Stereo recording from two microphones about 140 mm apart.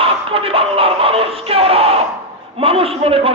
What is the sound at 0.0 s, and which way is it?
Music, 40° right (ahead or behind).